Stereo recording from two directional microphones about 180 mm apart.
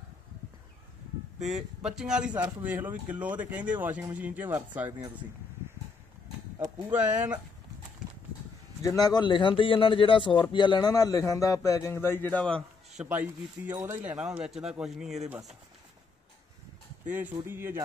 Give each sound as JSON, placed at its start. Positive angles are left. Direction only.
{"t": 1.4, "sound": "speech", "side_deg": -5}
{"t": 6.6, "sound": "speech", "side_deg": -10}
{"t": 8.8, "sound": "a man's voice", "side_deg": 20}
{"t": 13.0, "sound": "speech", "side_deg": -10}
{"t": 17.5, "sound": "speech", "side_deg": -10}